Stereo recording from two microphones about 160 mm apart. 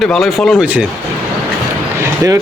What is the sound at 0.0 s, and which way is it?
Speech, centre (ahead or behind).